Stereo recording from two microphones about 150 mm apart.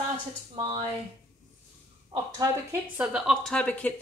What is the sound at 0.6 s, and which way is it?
Speech, 40° right (ahead or behind).